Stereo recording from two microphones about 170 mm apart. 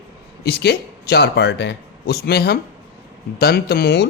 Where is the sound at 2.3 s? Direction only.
70° left (ahead or behind).